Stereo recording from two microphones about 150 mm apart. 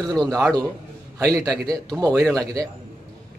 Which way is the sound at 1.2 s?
5° left (ahead or behind).